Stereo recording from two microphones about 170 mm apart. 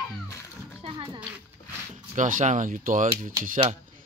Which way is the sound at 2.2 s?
50° right (ahead or behind).